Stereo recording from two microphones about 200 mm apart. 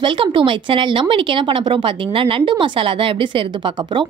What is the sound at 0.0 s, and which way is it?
Speech, 25° right (ahead or behind).